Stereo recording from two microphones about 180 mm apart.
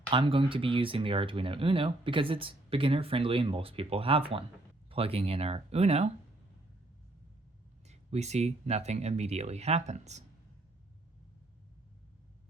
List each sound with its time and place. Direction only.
0.1 s speech: 30° right (ahead or behind)
7.9 s speech: 40° right (ahead or behind)